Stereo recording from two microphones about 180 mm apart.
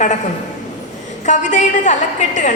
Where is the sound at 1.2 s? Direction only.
40° left (ahead or behind).